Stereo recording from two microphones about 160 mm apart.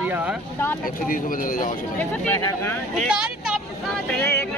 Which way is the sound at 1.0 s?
60° left (ahead or behind).